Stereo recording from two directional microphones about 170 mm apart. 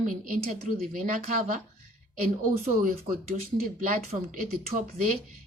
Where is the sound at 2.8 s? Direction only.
55° right (ahead or behind).